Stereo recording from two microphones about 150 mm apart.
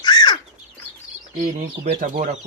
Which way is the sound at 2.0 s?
60° right (ahead or behind).